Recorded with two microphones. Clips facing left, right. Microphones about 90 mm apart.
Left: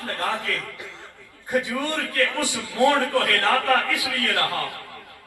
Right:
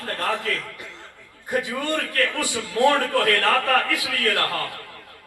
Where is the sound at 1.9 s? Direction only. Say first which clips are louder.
Right 1 dB; 20° left (ahead or behind).